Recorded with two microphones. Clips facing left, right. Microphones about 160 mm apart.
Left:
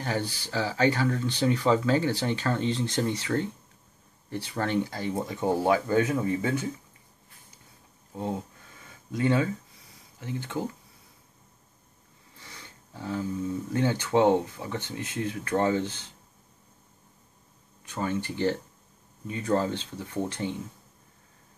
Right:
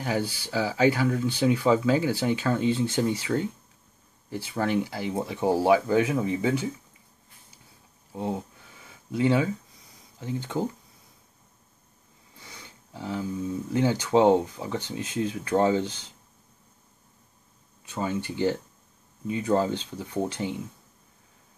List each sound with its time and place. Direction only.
0.0 s speech: 10° right (ahead or behind)
8.1 s a sound: 15° right (ahead or behind)
9.1 s speech: 15° right (ahead or behind)
12.4 s a sound: 10° right (ahead or behind)
13.7 s speech: 15° right (ahead or behind)
17.8 s speech: 10° right (ahead or behind)